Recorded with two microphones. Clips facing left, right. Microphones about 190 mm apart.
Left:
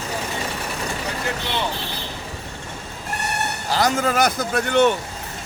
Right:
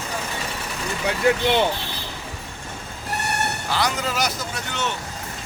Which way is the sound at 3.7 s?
45° left (ahead or behind).